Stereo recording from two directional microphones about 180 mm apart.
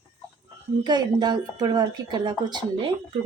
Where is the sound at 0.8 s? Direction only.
25° right (ahead or behind).